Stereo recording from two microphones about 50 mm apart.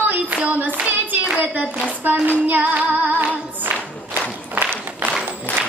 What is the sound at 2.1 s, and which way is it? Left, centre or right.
Female singing, right.